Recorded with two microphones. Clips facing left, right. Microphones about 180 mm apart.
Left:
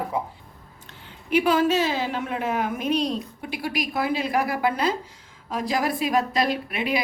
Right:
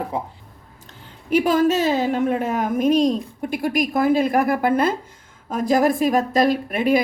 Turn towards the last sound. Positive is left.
turn(degrees=-45)  # may be behind; listen again after turning